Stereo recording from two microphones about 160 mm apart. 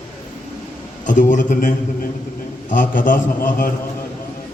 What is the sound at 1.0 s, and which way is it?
A man's voice, 55° left (ahead or behind).